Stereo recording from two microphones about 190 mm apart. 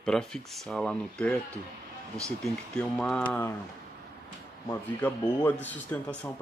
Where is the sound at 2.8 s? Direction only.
5° left (ahead or behind).